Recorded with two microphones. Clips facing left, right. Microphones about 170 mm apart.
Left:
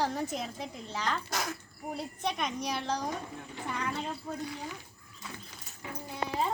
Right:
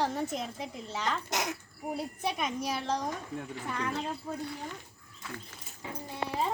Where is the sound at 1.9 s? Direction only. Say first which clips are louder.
Right 1 dB; 5° right (ahead or behind).